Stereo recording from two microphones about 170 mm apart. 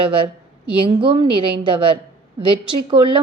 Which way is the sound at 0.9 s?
30° right (ahead or behind).